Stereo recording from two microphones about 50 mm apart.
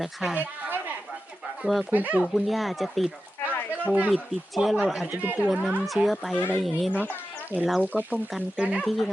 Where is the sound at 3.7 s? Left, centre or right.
Right.